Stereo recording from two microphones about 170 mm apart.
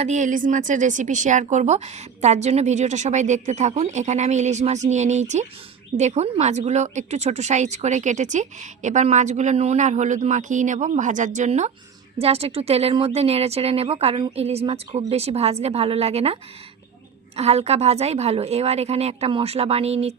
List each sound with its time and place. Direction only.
0.0 s a woman's voice: 45° right (ahead or behind)